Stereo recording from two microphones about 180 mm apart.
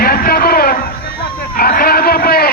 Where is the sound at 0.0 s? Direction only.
55° left (ahead or behind).